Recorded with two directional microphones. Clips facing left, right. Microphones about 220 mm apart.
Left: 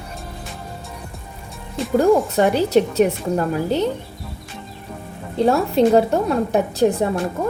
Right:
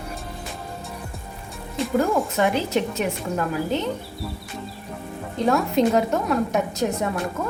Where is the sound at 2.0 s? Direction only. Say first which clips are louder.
Left 6 dB; 35° left (ahead or behind).